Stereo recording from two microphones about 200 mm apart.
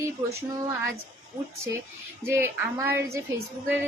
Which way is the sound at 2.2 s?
10° right (ahead or behind).